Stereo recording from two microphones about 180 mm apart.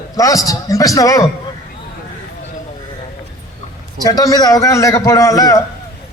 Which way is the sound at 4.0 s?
20° left (ahead or behind).